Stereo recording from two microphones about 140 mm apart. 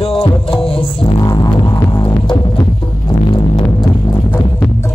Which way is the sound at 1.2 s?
25° left (ahead or behind).